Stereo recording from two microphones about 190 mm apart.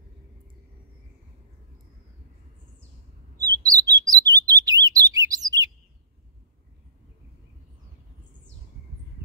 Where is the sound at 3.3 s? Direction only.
20° right (ahead or behind).